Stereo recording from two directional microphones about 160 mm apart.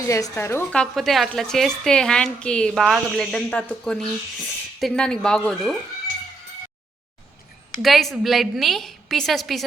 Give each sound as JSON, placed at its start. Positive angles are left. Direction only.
{"t": 0.1, "sound": "speech", "side_deg": 15}
{"t": 0.8, "sound": "a woman's voice", "side_deg": 0}
{"t": 7.8, "sound": "a woman's voice", "side_deg": 0}